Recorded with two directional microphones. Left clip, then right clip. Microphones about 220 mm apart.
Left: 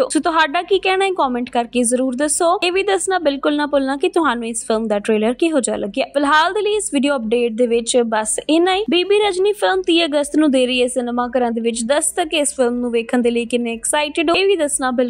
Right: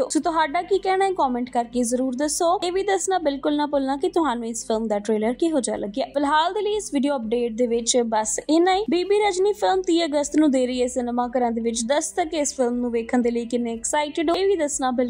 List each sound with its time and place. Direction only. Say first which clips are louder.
0.0 s a woman's voice: left 6 dB; 20° left (ahead or behind)